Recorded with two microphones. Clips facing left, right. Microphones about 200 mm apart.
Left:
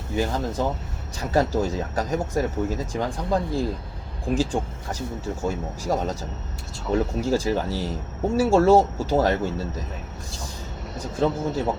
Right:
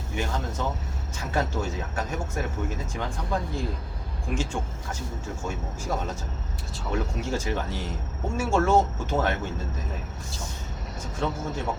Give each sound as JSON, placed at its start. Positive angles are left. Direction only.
{"t": 0.2, "sound": "speech", "side_deg": 35}
{"t": 11.2, "sound": "speech", "side_deg": 35}